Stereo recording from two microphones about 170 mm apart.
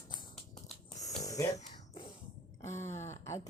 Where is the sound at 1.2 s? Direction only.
20° left (ahead or behind).